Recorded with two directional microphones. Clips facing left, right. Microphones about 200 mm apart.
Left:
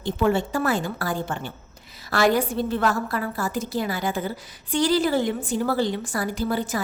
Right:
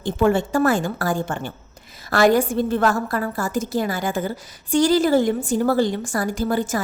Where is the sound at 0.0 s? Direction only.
50° right (ahead or behind).